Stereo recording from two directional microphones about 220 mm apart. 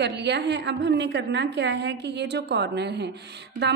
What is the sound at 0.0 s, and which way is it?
A woman's voice, 50° right (ahead or behind).